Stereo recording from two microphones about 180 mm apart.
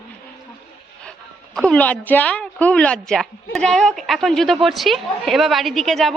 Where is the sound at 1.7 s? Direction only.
10° left (ahead or behind).